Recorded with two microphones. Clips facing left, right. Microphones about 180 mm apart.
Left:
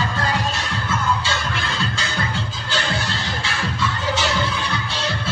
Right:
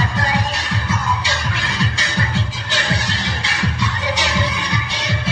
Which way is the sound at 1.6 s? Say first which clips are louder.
Right 2 dB; 15° right (ahead or behind).